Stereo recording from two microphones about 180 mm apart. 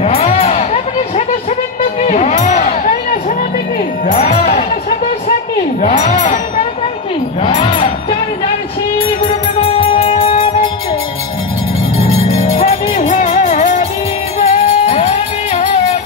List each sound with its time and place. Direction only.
0.0 s music: 35° left (ahead or behind)
2.0 s a sound: 40° left (ahead or behind)
4.1 s music: 35° left (ahead or behind)
9.2 s music: 30° left (ahead or behind)
12.4 s music: 35° left (ahead or behind)